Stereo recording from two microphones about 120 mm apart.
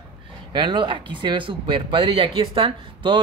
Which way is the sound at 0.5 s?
40° right (ahead or behind).